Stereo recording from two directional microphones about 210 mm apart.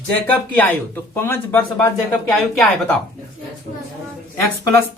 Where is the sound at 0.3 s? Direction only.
10° left (ahead or behind).